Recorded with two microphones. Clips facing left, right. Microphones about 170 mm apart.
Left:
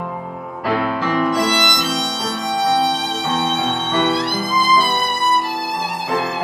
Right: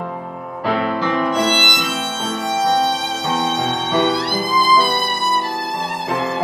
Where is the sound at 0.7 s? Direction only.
5° left (ahead or behind).